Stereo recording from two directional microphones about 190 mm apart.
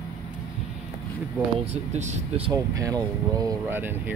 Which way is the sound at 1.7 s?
35° right (ahead or behind).